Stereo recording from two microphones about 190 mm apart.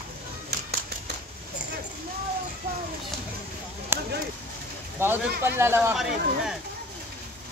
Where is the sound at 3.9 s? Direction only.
10° right (ahead or behind).